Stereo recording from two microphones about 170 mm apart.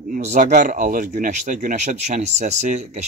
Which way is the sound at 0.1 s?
50° right (ahead or behind).